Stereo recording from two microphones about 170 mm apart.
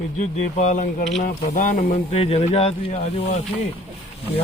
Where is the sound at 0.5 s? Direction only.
45° left (ahead or behind).